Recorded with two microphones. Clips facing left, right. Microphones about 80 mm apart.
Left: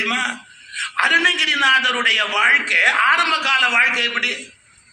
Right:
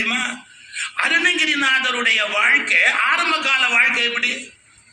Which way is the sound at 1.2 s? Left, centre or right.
Left.